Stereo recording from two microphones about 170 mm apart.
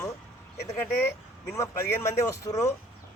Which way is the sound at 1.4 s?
15° left (ahead or behind).